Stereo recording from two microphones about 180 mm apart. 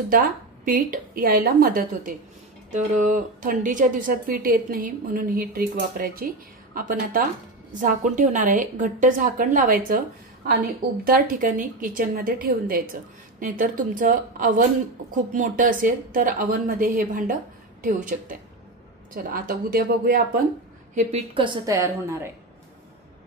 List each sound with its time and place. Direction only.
0.1 s a woman's voice: 50° right (ahead or behind)
20.9 s a woman's voice: 40° right (ahead or behind)
21.4 s a woman's voice: 25° right (ahead or behind)